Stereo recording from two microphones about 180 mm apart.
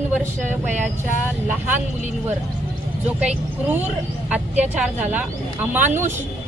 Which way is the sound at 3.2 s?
10° right (ahead or behind).